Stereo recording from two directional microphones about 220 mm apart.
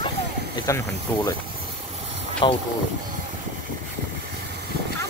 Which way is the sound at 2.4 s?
20° left (ahead or behind).